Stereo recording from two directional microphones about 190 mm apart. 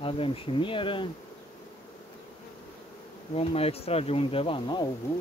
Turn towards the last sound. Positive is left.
turn(degrees=25)  # may be behind; listen again after turning